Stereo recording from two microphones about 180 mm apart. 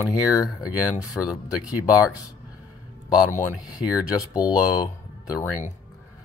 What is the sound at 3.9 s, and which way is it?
Speech, 20° left (ahead or behind).